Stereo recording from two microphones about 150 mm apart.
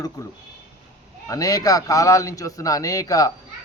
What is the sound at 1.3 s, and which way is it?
Speech, 25° left (ahead or behind).